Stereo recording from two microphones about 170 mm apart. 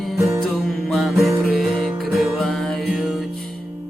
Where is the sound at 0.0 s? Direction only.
Centre (ahead or behind).